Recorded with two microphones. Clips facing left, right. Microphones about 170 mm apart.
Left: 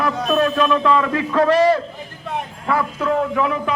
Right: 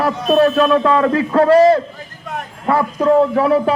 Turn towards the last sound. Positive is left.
turn(degrees=-35)  # may be behind; listen again after turning